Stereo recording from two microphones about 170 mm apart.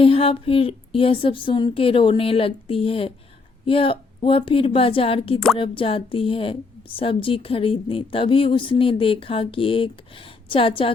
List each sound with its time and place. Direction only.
0.0 s a woman's voice: 35° left (ahead or behind)